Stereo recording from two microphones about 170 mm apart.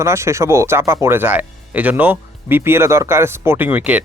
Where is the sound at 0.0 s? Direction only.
15° right (ahead or behind).